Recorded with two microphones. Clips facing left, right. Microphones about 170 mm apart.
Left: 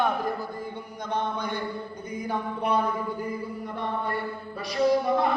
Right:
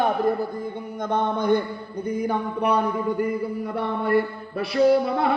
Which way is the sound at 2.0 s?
65° right (ahead or behind).